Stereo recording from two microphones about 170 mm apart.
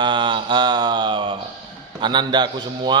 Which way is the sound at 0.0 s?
25° right (ahead or behind).